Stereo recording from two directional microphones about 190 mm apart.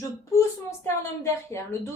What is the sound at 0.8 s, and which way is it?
A woman's voice, 15° left (ahead or behind).